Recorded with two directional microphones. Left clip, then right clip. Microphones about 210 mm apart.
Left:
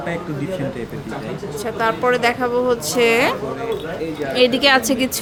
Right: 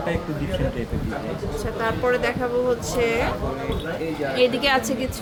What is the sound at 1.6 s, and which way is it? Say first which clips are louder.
Speech: left 6 dB; 15° left (ahead or behind).